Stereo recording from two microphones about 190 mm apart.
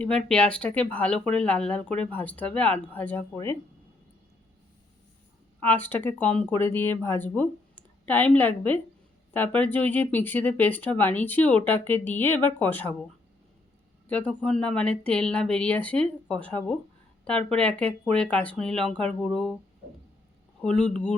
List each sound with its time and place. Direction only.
0.3 s speech: 5° left (ahead or behind)
5.5 s a woman's voice: 10° left (ahead or behind)
14.1 s speech: 5° left (ahead or behind)
20.6 s speech: 5° left (ahead or behind)